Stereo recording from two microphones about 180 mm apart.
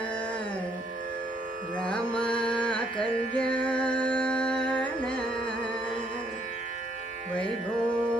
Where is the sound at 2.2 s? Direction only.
5° left (ahead or behind).